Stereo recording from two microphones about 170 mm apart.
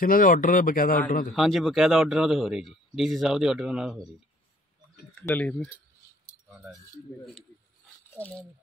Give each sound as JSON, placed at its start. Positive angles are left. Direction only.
{"t": 0.0, "sound": "a man's voice", "side_deg": 55}
{"t": 1.3, "sound": "a man's voice", "side_deg": 0}
{"t": 5.2, "sound": "speech", "side_deg": 10}
{"t": 6.5, "sound": "a man's voice", "side_deg": -5}
{"t": 8.2, "sound": "speech", "side_deg": 10}